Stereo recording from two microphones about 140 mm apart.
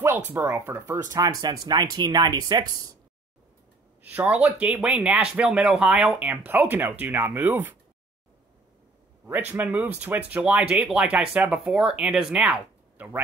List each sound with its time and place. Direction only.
0.3 s speech: 15° right (ahead or behind)
1.1 s speech: 30° right (ahead or behind)
4.0 s speech: 10° right (ahead or behind)
9.5 s speech: 15° right (ahead or behind)